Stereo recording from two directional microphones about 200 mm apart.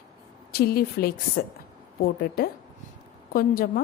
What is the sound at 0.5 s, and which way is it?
A woman's voice, 50° left (ahead or behind).